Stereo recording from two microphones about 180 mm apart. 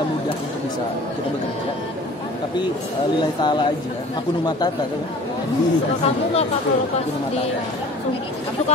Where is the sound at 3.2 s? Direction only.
25° left (ahead or behind).